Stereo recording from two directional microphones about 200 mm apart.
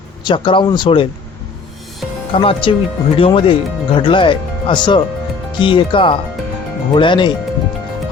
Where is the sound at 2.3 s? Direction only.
25° left (ahead or behind).